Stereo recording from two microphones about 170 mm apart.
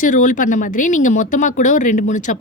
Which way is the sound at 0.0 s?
50° left (ahead or behind).